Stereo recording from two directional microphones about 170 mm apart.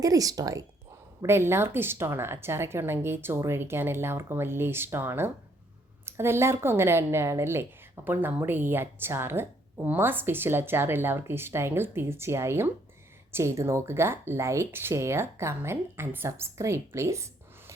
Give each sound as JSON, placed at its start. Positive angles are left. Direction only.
{"t": 0.0, "sound": "speech", "side_deg": -20}